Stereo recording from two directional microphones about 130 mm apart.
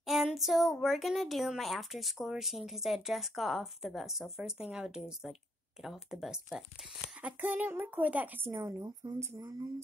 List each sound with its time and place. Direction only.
0.0 s a woman's voice: centre (ahead or behind); by 9.7 s 30° right (ahead or behind)